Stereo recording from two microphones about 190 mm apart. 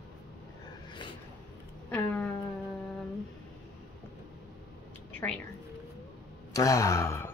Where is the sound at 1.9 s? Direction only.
10° left (ahead or behind).